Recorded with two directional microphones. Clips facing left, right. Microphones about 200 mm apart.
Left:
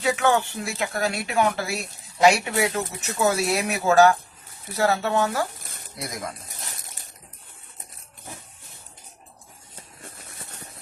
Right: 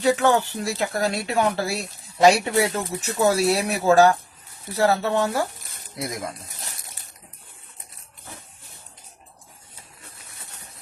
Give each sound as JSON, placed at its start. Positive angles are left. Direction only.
{"t": 0.0, "sound": "speech", "side_deg": -35}